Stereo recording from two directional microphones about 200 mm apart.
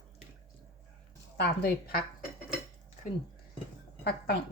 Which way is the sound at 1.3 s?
55° left (ahead or behind).